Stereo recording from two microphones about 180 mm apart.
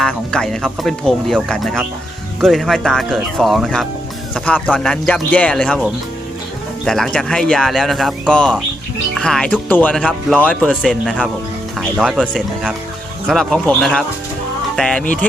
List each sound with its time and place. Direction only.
0.0 s speech: 5° left (ahead or behind)
6.8 s speech: centre (ahead or behind)
10.7 s speech: 5° right (ahead or behind)